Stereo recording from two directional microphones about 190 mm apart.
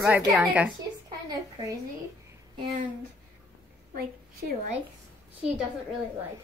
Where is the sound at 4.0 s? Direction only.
50° right (ahead or behind).